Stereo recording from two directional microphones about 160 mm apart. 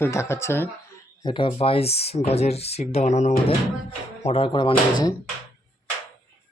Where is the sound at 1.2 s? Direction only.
30° left (ahead or behind).